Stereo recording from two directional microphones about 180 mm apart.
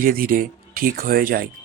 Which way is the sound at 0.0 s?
50° right (ahead or behind).